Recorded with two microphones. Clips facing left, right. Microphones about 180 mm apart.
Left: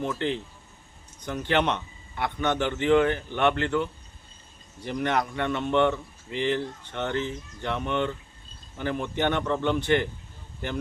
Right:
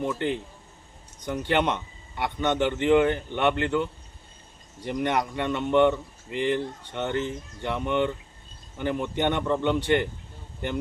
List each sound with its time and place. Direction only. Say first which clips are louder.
0.0 s a man's voice: right 1 dB; 15° right (ahead or behind)
4.9 s a man's voice: right 1 dB; 15° right (ahead or behind)